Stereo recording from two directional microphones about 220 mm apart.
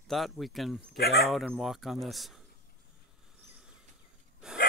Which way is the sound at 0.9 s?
45° left (ahead or behind).